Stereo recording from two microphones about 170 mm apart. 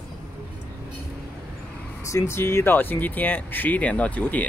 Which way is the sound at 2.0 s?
20° left (ahead or behind).